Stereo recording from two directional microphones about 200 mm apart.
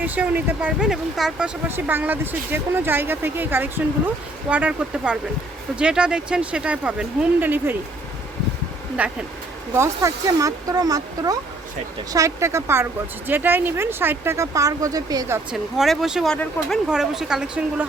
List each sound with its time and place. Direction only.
0.0 s speech: 10° right (ahead or behind)
9.0 s speech: 5° right (ahead or behind)
15.8 s speech: centre (ahead or behind)